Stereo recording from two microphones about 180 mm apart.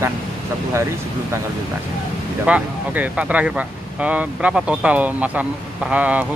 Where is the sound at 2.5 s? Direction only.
10° right (ahead or behind).